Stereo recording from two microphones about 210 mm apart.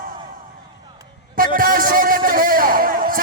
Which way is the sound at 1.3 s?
40° right (ahead or behind).